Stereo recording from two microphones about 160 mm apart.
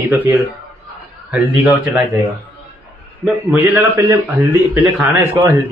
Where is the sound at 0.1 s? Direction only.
10° right (ahead or behind).